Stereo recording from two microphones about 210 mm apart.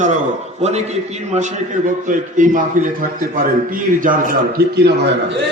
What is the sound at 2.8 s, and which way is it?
Speech, 40° right (ahead or behind).